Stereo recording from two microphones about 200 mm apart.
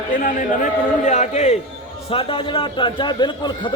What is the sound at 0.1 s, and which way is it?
A man's voice, 45° left (ahead or behind).